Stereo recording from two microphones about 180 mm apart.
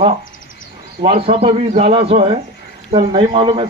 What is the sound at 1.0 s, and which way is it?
A man's voice, 30° right (ahead or behind).